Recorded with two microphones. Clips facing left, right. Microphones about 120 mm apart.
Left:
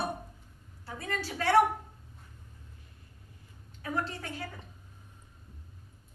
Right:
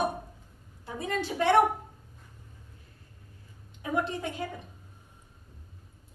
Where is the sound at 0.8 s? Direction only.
20° right (ahead or behind).